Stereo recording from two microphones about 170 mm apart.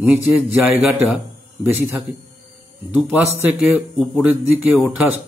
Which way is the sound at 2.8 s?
10° right (ahead or behind).